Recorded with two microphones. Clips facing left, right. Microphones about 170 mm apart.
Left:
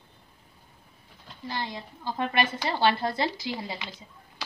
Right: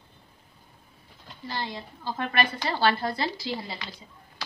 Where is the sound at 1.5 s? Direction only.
20° left (ahead or behind).